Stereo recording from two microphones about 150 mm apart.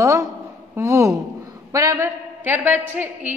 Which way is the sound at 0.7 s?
20° right (ahead or behind).